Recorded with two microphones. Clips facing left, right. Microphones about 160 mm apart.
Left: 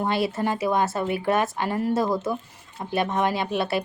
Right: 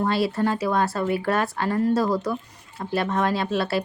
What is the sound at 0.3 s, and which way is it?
Speech, 20° left (ahead or behind).